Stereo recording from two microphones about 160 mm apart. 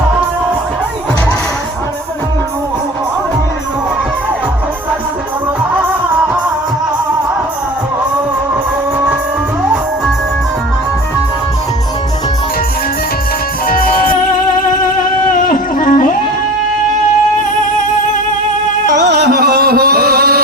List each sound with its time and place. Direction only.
13.7 s music: 60° left (ahead or behind)
15.3 s a sound: 55° left (ahead or behind)
18.9 s music: 90° right; by 20.4 s 70° right (ahead or behind)